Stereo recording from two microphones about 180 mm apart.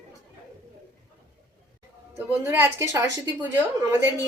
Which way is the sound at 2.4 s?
10° right (ahead or behind).